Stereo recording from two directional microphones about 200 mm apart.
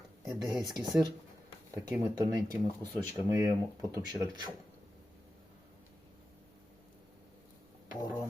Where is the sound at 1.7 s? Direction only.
15° right (ahead or behind).